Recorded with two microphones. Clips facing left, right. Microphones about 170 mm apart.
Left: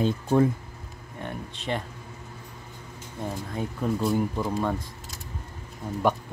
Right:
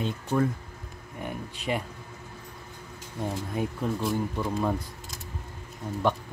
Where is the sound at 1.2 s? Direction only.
10° right (ahead or behind).